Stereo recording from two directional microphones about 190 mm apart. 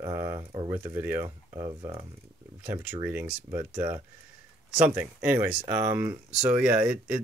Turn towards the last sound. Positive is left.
turn(degrees=-5)  # may be behind; listen again after turning